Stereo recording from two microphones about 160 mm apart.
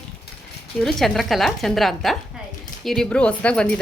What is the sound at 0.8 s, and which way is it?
Speech, centre (ahead or behind).